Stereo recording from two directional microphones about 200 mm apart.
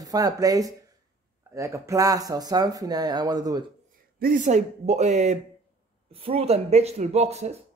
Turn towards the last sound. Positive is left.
turn(degrees=-35)  # may be behind; listen again after turning